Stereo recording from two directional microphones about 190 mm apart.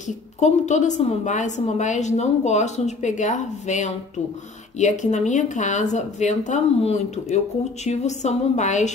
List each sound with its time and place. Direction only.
0.4 s speech: 40° left (ahead or behind)